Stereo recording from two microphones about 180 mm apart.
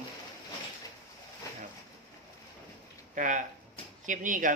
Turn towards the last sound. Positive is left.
turn(degrees=-45)  # may be behind; listen again after turning